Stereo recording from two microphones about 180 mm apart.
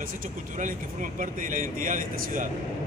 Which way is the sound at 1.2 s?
50° right (ahead or behind).